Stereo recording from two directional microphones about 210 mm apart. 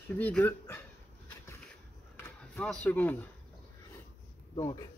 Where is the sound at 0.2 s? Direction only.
5° left (ahead or behind).